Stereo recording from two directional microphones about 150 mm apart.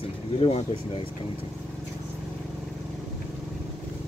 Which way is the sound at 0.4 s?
40° left (ahead or behind).